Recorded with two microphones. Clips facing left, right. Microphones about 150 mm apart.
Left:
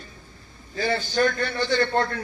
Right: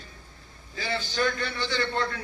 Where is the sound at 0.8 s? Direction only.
50° left (ahead or behind).